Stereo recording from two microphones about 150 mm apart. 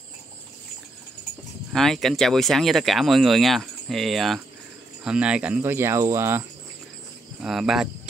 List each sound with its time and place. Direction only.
1.7 s speech: centre (ahead or behind); by 6.4 s 15° right (ahead or behind)
7.3 s speech: 5° right (ahead or behind)